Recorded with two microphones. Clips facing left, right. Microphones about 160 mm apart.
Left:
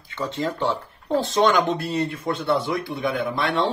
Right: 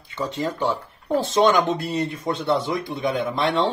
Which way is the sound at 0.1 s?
20° right (ahead or behind).